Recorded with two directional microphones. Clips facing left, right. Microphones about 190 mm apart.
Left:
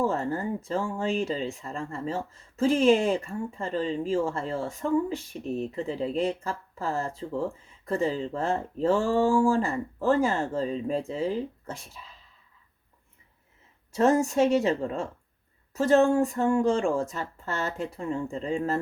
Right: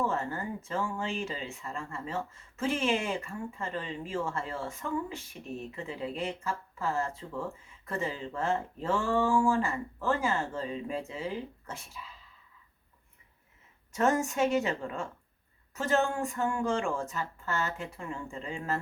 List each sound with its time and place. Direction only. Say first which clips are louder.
0.0 s speech: left 5 dB; 35° left (ahead or behind)
13.9 s speech: left 6 dB; 35° left (ahead or behind)